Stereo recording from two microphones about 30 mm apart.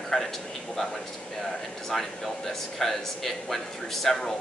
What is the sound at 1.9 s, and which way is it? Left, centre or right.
A man's voice, centre.